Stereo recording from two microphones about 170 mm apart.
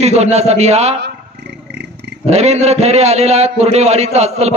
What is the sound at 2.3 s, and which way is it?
A man's voice, 40° right (ahead or behind).